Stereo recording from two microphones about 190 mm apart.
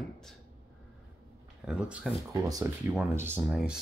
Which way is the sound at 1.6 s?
Centre (ahead or behind).